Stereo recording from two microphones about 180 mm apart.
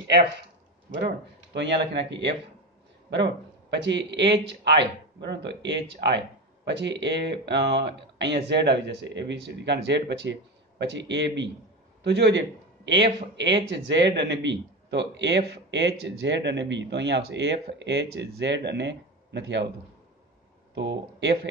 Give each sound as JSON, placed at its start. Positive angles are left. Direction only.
{"t": 0.9, "sound": "speech", "side_deg": -70}
{"t": 3.7, "sound": "speech", "side_deg": -80}
{"t": 20.7, "sound": "speech", "side_deg": -75}